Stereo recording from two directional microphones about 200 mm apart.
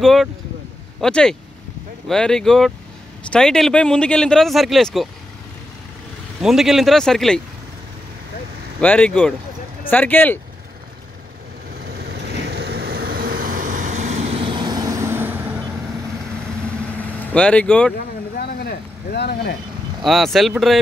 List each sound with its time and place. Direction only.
0.0 s speech: centre (ahead or behind)
6.4 s speech: centre (ahead or behind)
8.8 s speech: 5° left (ahead or behind)
12.1 s vehicle: 55° right (ahead or behind); by 15.3 s 10° right (ahead or behind)
17.0 s speech: 5° left (ahead or behind)
17.9 s a sound: 45° left (ahead or behind)
20.1 s speech: centre (ahead or behind)